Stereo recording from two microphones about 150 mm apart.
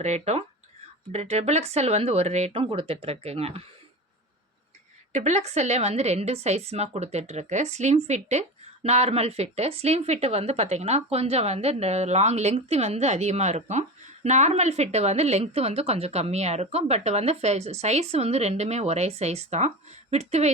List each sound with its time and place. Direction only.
0.0 s a woman's voice: 45° right (ahead or behind)
5.1 s a woman's voice: 50° right (ahead or behind)